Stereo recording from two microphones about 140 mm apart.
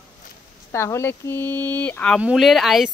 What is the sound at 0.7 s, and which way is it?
Speech, 20° left (ahead or behind).